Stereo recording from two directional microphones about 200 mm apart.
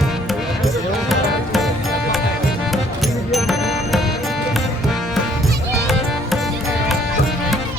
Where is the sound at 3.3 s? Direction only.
Centre (ahead or behind).